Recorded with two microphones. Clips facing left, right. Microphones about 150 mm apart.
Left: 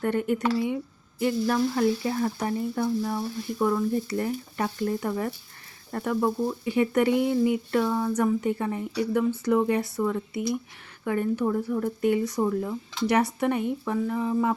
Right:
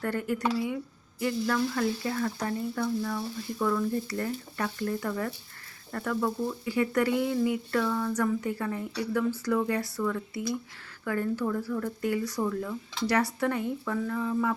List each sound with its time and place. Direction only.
0.0 s speech: 20° left (ahead or behind)